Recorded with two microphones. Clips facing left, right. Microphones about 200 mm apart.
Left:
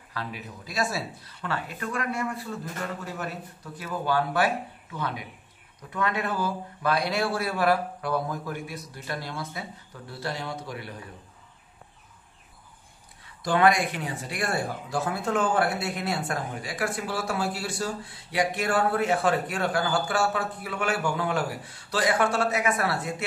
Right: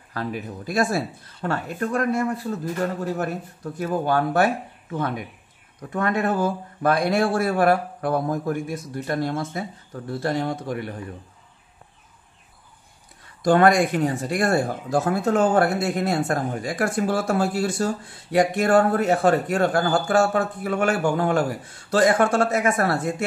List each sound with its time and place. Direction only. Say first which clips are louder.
0.1 s speech: right 7 dB; 50° right (ahead or behind)
13.4 s speech: right 5 dB; 45° right (ahead or behind)